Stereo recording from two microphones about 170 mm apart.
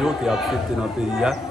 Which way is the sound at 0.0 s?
Centre (ahead or behind).